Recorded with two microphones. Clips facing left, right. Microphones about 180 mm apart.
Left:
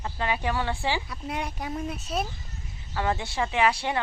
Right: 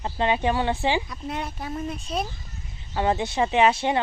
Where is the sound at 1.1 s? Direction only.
10° left (ahead or behind).